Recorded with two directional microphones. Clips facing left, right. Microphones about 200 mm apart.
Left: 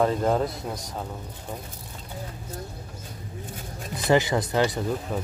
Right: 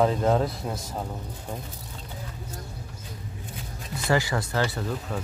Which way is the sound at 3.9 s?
20° left (ahead or behind).